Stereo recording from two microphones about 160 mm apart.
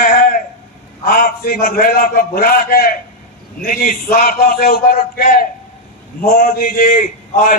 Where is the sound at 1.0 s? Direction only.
60° left (ahead or behind).